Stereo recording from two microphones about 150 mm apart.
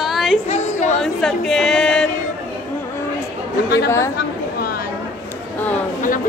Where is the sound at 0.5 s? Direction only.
50° left (ahead or behind).